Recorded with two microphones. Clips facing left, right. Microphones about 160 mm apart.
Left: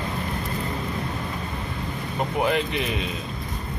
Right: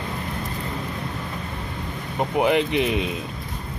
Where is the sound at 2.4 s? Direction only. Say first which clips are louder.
Right 5 dB; 15° right (ahead or behind).